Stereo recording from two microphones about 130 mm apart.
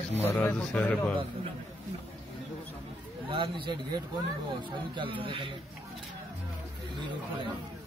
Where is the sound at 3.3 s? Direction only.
40° right (ahead or behind).